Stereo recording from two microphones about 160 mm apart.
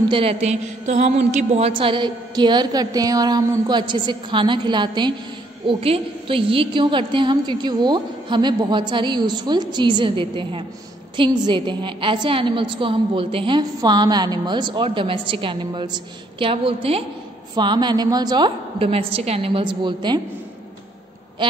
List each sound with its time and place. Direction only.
0.1 s mantra: 35° right (ahead or behind)
11.1 s a woman's voice: 30° right (ahead or behind)
17.6 s mantra: 30° right (ahead or behind)